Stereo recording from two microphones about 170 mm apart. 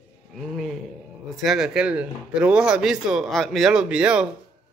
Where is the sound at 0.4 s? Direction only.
Centre (ahead or behind).